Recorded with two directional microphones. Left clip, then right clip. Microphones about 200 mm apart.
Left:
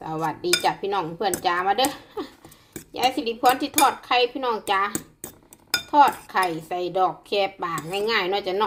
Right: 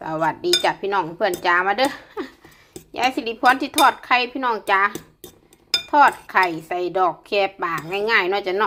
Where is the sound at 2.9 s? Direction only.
20° right (ahead or behind).